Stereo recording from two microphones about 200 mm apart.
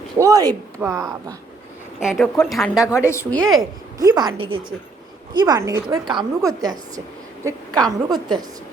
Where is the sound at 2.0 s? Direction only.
Centre (ahead or behind).